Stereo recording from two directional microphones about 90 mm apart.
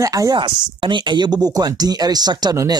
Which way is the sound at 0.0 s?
40° right (ahead or behind).